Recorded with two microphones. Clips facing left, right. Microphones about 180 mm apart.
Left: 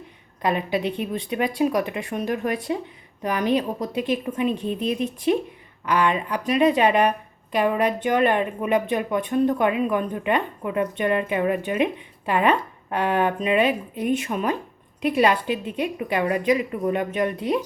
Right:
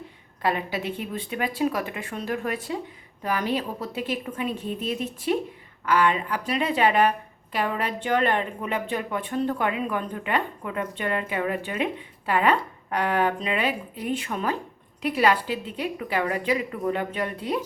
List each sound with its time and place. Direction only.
0.4 s speech: 20° left (ahead or behind)
5.8 s speech: 20° left (ahead or behind)